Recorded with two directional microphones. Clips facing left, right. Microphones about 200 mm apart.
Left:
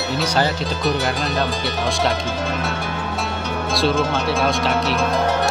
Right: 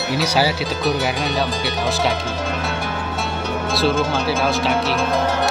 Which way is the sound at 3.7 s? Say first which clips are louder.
Even; centre (ahead or behind).